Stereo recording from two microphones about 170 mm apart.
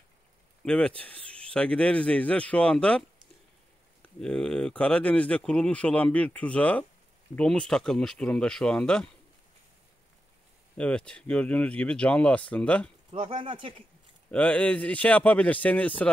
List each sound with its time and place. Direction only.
0.7 s speech: 5° left (ahead or behind)
4.2 s speech: 5° left (ahead or behind)
10.8 s speech: 5° left (ahead or behind)
13.1 s speech: 30° right (ahead or behind)
14.3 s speech: 5° left (ahead or behind)